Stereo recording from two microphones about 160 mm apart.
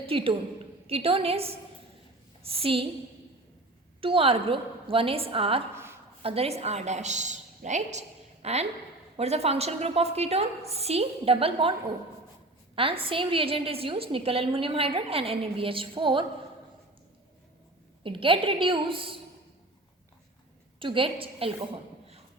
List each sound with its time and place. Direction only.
0.0 s a woman's voice: 35° right (ahead or behind)
2.6 s a woman's voice: 35° right (ahead or behind)
4.0 s a woman's voice: 35° right (ahead or behind)
5.7 s a sound: 15° right (ahead or behind)
6.2 s a woman's voice: 40° right (ahead or behind)
12.7 s a woman's voice: 35° right (ahead or behind)
18.0 s a woman's voice: 35° right (ahead or behind)
20.7 s a woman's voice: 35° right (ahead or behind)